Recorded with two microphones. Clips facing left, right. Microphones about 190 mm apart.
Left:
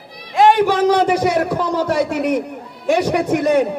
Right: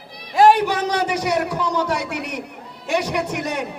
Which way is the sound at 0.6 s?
50° left (ahead or behind).